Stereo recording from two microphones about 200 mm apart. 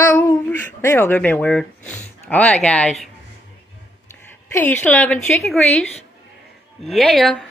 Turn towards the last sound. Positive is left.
turn(degrees=0)  # may be behind; listen again after turning